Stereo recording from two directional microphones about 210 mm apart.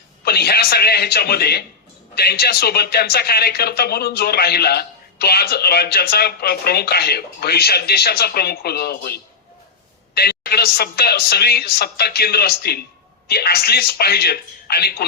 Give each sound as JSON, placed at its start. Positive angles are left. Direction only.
{"t": 0.3, "sound": "a man's voice", "side_deg": 50}